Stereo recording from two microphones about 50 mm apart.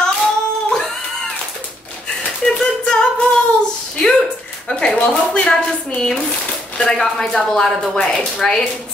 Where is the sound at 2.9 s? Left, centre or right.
Centre.